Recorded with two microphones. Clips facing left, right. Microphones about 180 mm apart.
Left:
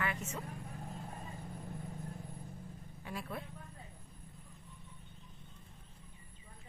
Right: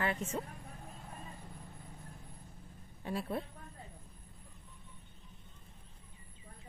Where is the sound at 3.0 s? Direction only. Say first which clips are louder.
Right 6 dB; 30° right (ahead or behind).